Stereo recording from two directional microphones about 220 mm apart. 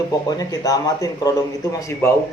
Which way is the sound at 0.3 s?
15° left (ahead or behind).